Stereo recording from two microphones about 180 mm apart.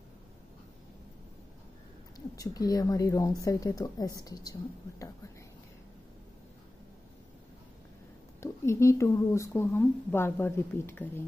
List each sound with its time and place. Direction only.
2.1 s a woman's voice: 20° left (ahead or behind)
8.4 s a woman's voice: 15° left (ahead or behind)